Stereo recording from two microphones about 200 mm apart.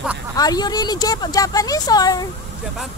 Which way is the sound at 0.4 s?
20° left (ahead or behind).